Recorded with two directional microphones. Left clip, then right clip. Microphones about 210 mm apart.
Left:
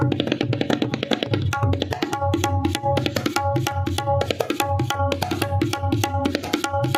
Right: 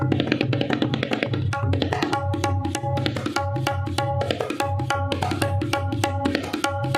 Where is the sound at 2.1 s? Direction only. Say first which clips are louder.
Left 2 dB; 35° left (ahead or behind).